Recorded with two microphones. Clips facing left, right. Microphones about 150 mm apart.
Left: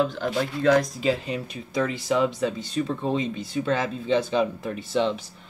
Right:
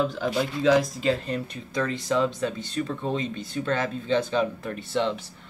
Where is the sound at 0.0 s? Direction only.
Centre (ahead or behind).